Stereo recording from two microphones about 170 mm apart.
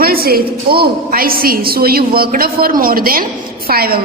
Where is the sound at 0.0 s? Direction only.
60° right (ahead or behind).